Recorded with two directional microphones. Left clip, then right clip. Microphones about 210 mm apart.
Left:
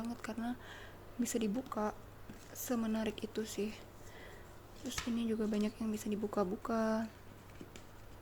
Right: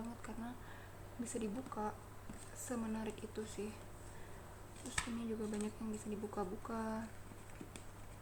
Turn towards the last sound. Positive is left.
turn(degrees=45)  # may be behind; listen again after turning